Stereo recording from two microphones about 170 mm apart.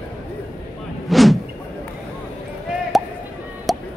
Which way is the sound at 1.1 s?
Centre (ahead or behind).